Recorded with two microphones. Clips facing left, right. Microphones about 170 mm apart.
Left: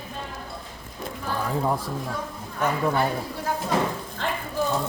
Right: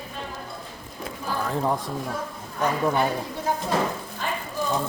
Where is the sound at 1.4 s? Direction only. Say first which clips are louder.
Even; 5° left (ahead or behind).